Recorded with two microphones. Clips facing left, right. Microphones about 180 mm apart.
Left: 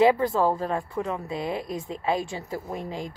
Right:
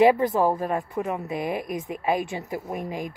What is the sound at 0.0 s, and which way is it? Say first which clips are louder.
Speech: right 2 dB; 20° right (ahead or behind).